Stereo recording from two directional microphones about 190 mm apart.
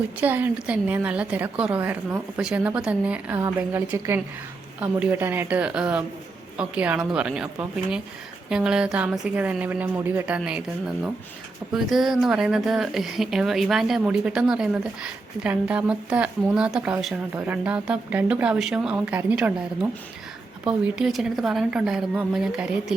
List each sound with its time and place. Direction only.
0.2 s speech: 10° right (ahead or behind)